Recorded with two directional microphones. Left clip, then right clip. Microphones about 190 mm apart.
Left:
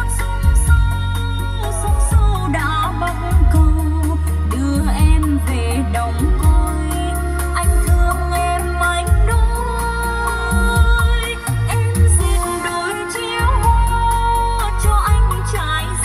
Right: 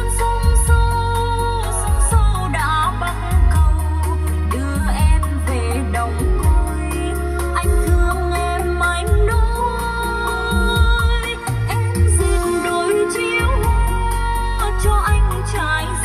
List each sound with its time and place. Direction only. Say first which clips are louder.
8.1 s music: left 5 dB; 20° left (ahead or behind)